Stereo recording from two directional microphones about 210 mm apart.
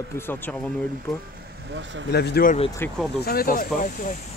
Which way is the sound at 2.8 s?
10° left (ahead or behind).